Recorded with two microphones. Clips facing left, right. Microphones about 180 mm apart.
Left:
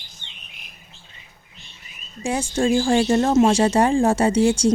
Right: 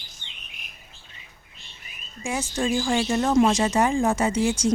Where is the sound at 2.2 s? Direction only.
30° left (ahead or behind).